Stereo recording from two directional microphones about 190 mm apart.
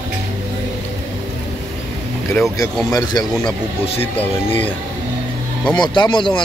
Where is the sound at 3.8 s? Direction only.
30° left (ahead or behind).